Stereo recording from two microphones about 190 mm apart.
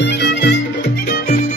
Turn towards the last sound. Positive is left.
turn(degrees=60)  # may be behind; listen again after turning